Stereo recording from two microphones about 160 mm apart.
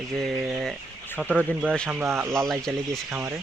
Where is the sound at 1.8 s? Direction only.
10° right (ahead or behind).